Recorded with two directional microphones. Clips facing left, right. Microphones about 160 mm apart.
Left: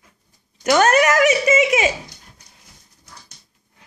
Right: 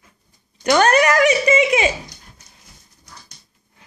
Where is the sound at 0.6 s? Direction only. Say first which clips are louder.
Even; 5° left (ahead or behind).